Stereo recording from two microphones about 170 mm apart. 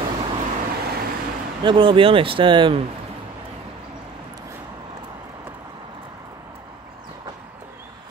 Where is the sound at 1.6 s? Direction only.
30° right (ahead or behind).